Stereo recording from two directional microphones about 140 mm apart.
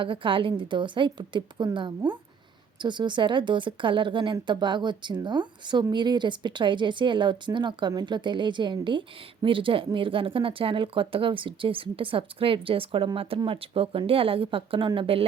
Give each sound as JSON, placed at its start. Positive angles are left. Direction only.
{"t": 0.0, "sound": "speech", "side_deg": -40}